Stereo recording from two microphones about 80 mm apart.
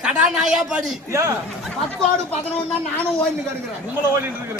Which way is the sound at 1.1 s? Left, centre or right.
Right.